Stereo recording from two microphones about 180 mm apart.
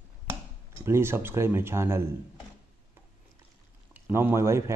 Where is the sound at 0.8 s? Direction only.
15° right (ahead or behind).